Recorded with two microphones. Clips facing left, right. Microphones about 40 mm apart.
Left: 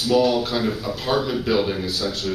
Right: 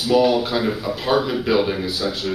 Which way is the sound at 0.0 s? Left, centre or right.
Centre.